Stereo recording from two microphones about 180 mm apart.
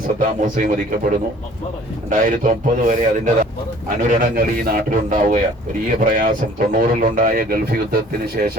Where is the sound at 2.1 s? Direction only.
50° right (ahead or behind).